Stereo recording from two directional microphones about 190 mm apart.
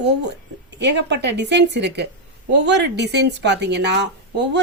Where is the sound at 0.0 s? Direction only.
65° right (ahead or behind).